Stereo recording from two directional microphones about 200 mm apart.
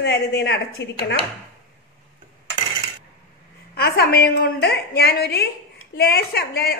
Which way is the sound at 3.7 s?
50° left (ahead or behind).